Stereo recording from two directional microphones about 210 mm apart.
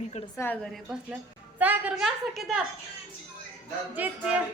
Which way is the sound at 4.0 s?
10° right (ahead or behind).